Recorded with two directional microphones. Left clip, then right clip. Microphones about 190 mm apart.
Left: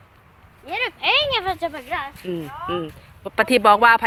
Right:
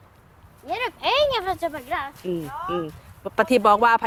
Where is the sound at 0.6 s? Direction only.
50° right (ahead or behind).